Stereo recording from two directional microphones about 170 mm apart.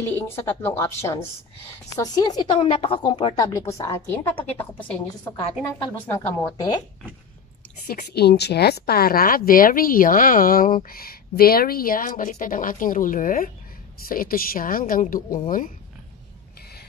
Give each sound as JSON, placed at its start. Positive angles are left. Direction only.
{"t": 0.1, "sound": "a woman's voice", "side_deg": 10}
{"t": 7.8, "sound": "speech", "side_deg": 55}